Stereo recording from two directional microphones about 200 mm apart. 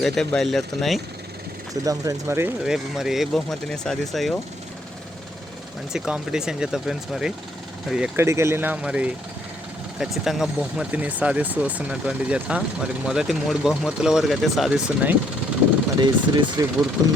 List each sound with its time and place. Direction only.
0.0 s speech: centre (ahead or behind)
1.7 s speech: 15° right (ahead or behind); by 4.4 s centre (ahead or behind)
5.9 s speech: 5° right (ahead or behind)
16.0 s speech: 20° right (ahead or behind)